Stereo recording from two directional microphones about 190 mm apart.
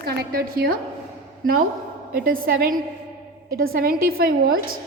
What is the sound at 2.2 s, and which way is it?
A woman's voice, 50° right (ahead or behind).